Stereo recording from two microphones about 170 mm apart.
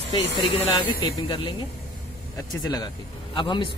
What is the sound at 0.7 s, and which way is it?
Speech, 25° left (ahead or behind).